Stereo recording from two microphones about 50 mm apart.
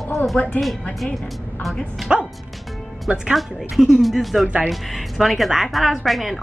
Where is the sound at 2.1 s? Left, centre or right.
Centre.